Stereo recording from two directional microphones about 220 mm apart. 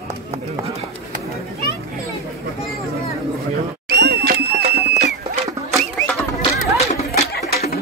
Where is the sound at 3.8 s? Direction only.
50° right (ahead or behind).